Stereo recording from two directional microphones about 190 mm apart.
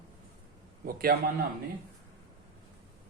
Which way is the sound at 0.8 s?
50° right (ahead or behind).